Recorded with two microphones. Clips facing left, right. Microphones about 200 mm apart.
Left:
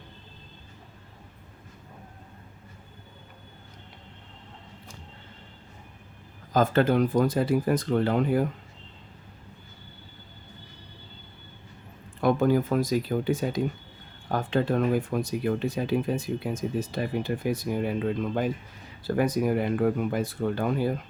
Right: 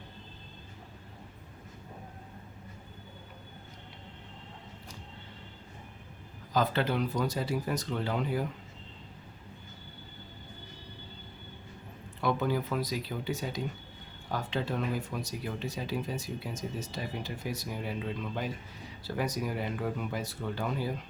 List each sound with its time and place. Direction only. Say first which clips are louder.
6.5 s speech: left 7 dB; 45° left (ahead or behind)
12.2 s speech: left 8 dB; 50° left (ahead or behind)